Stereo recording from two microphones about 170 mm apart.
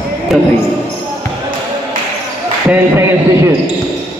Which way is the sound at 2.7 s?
15° right (ahead or behind).